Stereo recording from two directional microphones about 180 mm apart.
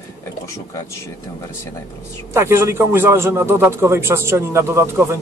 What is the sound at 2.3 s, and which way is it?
A man's voice, 15° right (ahead or behind).